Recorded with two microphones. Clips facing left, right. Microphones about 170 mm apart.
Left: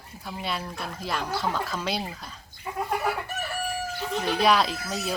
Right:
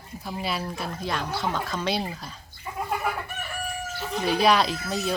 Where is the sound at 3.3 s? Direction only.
40° left (ahead or behind).